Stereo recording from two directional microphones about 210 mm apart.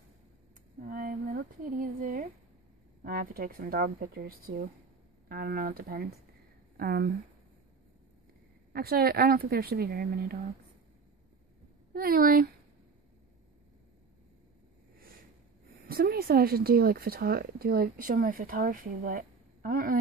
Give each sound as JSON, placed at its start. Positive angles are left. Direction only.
{"t": 0.7, "sound": "a sound", "side_deg": -40}
{"t": 3.0, "sound": "speech", "side_deg": -45}
{"t": 8.7, "sound": "speech", "side_deg": -45}
{"t": 11.9, "sound": "speech", "side_deg": -45}
{"t": 15.9, "sound": "speech", "side_deg": -45}